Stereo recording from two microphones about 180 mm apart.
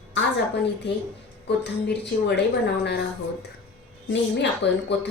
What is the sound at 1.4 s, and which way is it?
A woman's voice, 70° left (ahead or behind).